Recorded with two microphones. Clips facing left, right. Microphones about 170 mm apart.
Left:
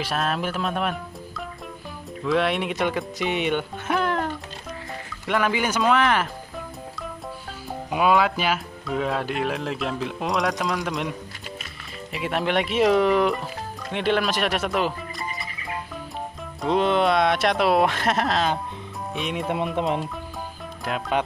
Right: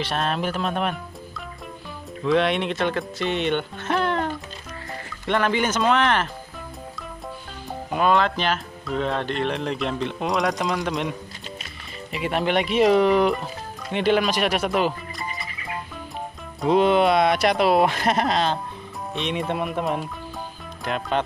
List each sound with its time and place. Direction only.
0.0 s speech: 5° left (ahead or behind)
2.2 s speech: centre (ahead or behind)
7.9 s speech: 10° left (ahead or behind)
12.1 s speech: centre (ahead or behind)
16.6 s speech: 5° right (ahead or behind)
19.6 s speech: 20° left (ahead or behind)
20.8 s speech: 5° left (ahead or behind)